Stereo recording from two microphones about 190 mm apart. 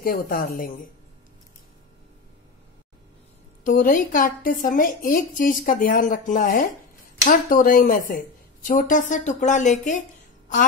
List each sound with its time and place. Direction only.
0.0 s a woman's voice: 50° left (ahead or behind)
3.6 s a woman's voice: 45° left (ahead or behind)